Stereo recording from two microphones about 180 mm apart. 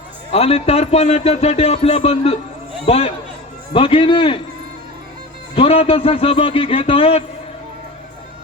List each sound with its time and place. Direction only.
0.3 s a man's voice: 35° left (ahead or behind)
5.5 s a man's voice: 30° left (ahead or behind)